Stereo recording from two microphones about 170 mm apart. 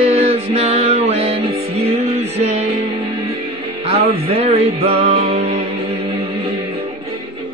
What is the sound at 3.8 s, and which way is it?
Music, 35° right (ahead or behind).